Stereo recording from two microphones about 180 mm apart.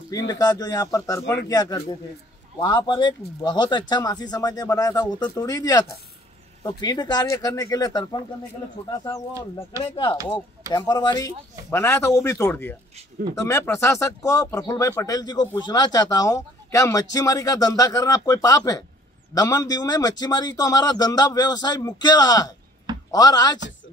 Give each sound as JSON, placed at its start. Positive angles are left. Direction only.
{"t": 0.3, "sound": "speech", "side_deg": 20}
{"t": 9.7, "sound": "speech", "side_deg": -15}
{"t": 10.7, "sound": "speech", "side_deg": 20}